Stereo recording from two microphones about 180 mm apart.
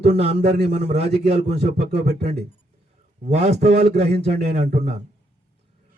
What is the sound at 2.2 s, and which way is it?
Speech, 65° right (ahead or behind).